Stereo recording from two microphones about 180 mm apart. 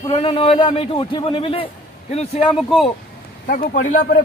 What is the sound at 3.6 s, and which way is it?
Speech, 40° left (ahead or behind).